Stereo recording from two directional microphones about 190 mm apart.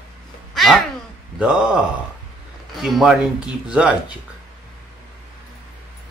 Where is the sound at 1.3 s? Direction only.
5° right (ahead or behind).